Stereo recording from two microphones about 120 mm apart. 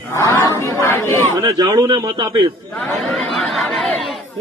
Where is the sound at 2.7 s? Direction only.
15° left (ahead or behind).